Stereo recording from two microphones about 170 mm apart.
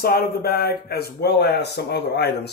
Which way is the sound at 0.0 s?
65° left (ahead or behind).